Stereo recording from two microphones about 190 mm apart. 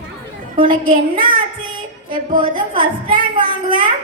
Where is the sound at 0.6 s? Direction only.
45° right (ahead or behind).